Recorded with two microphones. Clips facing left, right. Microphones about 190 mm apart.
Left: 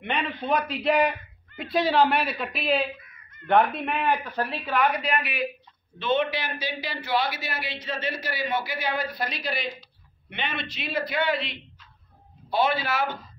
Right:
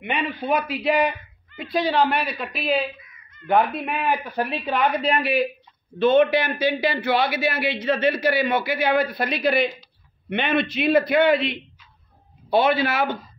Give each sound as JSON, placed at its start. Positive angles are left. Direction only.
{"t": 0.0, "sound": "speech", "side_deg": -10}
{"t": 5.9, "sound": "a man's voice", "side_deg": -50}